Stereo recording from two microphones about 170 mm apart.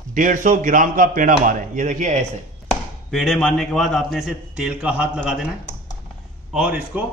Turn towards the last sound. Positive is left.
turn(degrees=-5)  # may be behind; listen again after turning